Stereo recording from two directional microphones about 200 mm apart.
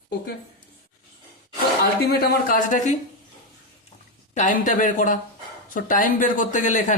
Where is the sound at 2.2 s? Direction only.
45° left (ahead or behind).